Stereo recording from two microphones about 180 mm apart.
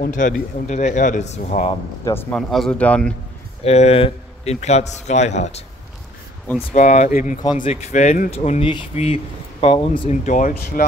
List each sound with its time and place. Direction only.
0.0 s speech: 45° left (ahead or behind)
2.3 s speech: centre (ahead or behind)
3.6 s speech: 35° left (ahead or behind)
6.7 s speech: 40° left (ahead or behind)
10.2 s speech: 45° left (ahead or behind)